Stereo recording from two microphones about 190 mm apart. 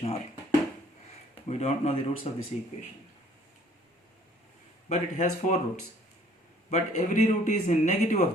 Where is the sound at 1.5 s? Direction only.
35° left (ahead or behind).